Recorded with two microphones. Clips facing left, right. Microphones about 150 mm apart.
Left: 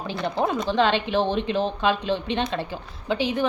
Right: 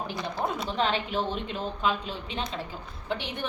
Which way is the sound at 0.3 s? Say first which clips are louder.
Left 7 dB; 85° left.